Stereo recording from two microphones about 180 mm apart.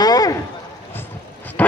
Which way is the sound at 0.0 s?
20° left (ahead or behind).